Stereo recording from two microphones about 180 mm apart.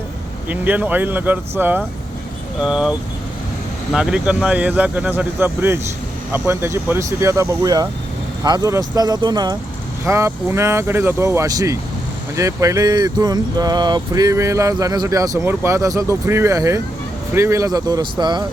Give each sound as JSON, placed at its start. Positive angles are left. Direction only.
{"t": 0.4, "sound": "speech", "side_deg": -10}
{"t": 3.9, "sound": "speech", "side_deg": -5}